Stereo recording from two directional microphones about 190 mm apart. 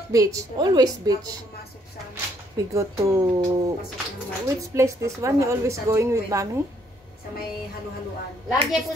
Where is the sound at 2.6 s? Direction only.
15° right (ahead or behind).